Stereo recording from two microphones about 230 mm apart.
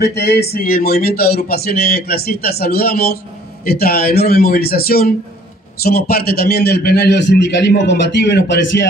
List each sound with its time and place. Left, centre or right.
0.0 s a man's voice: left